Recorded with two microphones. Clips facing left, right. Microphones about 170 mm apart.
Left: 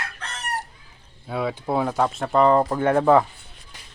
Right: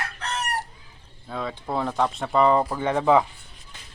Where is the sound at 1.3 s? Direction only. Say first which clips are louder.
Left 5 dB; 10° left (ahead or behind).